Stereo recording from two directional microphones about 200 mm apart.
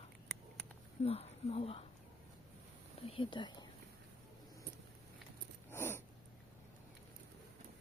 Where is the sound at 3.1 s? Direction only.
25° left (ahead or behind).